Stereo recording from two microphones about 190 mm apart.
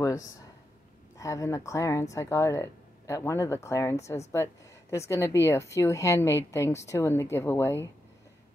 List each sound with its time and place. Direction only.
1.1 s a woman's voice: 15° left (ahead or behind)